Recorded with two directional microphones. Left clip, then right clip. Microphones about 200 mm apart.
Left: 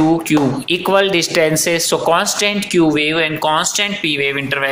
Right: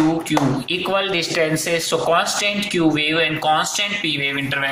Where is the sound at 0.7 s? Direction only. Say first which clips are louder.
Left 6 dB; 45° left (ahead or behind).